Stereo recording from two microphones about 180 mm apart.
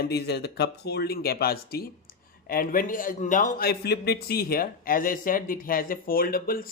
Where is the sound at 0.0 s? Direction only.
65° left (ahead or behind).